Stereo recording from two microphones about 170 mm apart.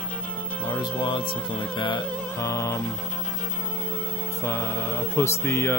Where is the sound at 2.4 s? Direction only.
15° left (ahead or behind).